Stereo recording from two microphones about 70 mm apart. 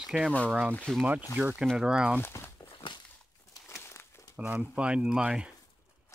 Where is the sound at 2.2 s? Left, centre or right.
Left.